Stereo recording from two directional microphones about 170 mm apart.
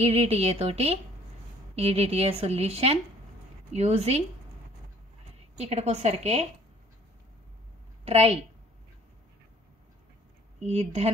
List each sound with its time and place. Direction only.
0.0 s speech: 35° right (ahead or behind)
5.6 s speech: 40° right (ahead or behind)
8.0 s a woman's voice: 35° right (ahead or behind)
10.6 s speech: 40° right (ahead or behind)